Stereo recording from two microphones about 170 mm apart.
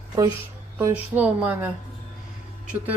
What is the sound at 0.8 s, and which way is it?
Speech, 10° right (ahead or behind).